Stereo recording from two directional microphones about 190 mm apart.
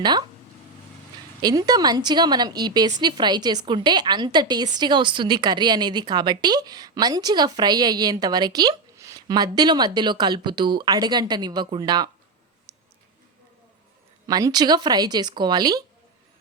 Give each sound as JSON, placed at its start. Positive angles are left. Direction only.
{"t": 0.0, "sound": "a woman's voice", "side_deg": -25}
{"t": 1.4, "sound": "a woman's voice", "side_deg": -20}
{"t": 12.7, "sound": "a sound", "side_deg": -20}
{"t": 14.3, "sound": "a woman's voice", "side_deg": -20}